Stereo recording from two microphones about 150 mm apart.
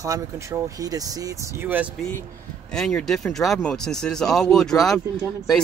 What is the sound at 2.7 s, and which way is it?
Speech, 5° left (ahead or behind).